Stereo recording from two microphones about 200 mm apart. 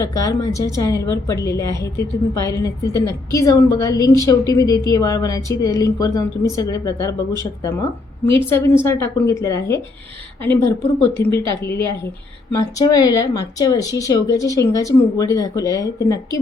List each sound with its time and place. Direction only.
0.0 s a woman's voice: 15° left (ahead or behind)